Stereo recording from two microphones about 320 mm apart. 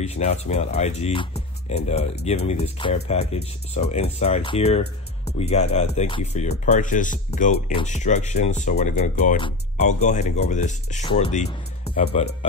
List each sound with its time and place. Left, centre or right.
0.0 s speech: centre